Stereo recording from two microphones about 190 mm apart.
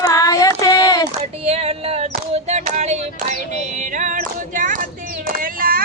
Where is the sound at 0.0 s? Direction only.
20° left (ahead or behind).